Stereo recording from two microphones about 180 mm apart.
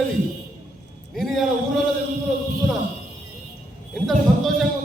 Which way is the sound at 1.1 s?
Centre (ahead or behind).